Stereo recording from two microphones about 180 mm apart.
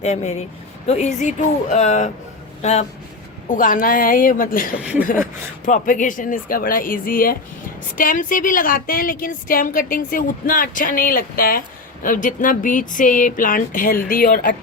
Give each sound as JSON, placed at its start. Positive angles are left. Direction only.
{"t": 0.0, "sound": "speech", "side_deg": 40}
{"t": 3.5, "sound": "a woman's voice", "side_deg": 50}
{"t": 4.8, "sound": "speech", "side_deg": -5}
{"t": 5.6, "sound": "a woman's voice", "side_deg": 45}